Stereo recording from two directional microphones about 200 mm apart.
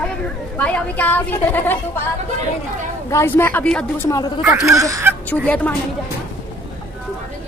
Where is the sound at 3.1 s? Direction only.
15° left (ahead or behind).